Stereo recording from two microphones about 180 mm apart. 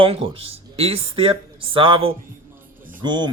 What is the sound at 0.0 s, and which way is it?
Speech, 30° right (ahead or behind).